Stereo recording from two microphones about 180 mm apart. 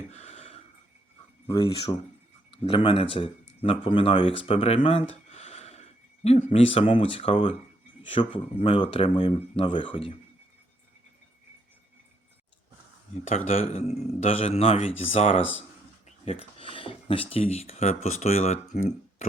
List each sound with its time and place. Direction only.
0.1 s a sound: 35° left (ahead or behind)
1.5 s speech: 20° left (ahead or behind)
2.5 s speech: 30° left (ahead or behind)
13.2 s a man's voice: 40° left (ahead or behind)